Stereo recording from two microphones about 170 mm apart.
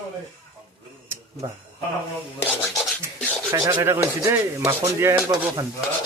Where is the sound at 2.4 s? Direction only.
5° left (ahead or behind).